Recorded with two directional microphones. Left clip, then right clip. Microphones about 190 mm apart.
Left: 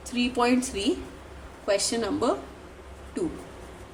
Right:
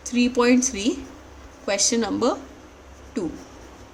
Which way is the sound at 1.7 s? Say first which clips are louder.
Right 3 dB; 40° right (ahead or behind).